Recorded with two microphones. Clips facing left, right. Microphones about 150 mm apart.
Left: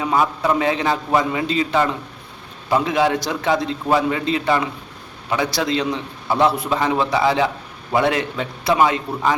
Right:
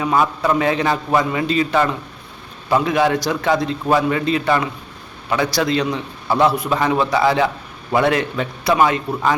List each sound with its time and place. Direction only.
0.0 s a man's voice: 20° left (ahead or behind)